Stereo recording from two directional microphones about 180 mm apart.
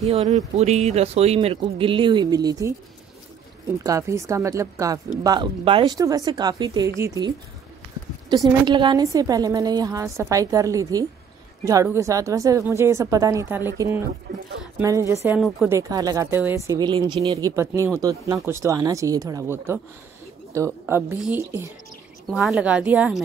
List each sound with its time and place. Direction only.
0.0 s speech: 35° right (ahead or behind)
3.8 s speech: 15° right (ahead or behind)
14.3 s speech: 55° right (ahead or behind)
14.8 s speech: 15° right (ahead or behind)
15.2 s speech: 5° right (ahead or behind)
15.9 s speech: 20° right (ahead or behind)